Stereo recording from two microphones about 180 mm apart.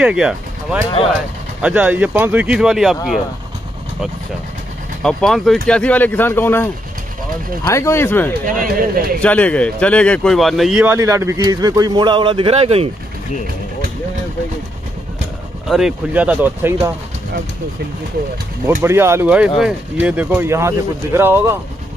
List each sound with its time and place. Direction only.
0.0 s speech: 5° right (ahead or behind)
5.0 s speech: centre (ahead or behind)
8.5 s speech: 50° right (ahead or behind)
9.2 s speech: 5° left (ahead or behind); by 12.9 s 35° right (ahead or behind)
15.7 s speech: 5° right (ahead or behind)
18.8 s speech: 15° right (ahead or behind)